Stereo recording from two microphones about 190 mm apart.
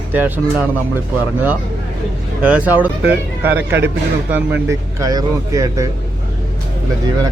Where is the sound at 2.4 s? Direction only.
10° right (ahead or behind).